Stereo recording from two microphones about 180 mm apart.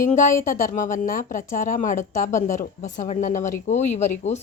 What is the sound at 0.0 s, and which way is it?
A woman's voice, 45° left (ahead or behind).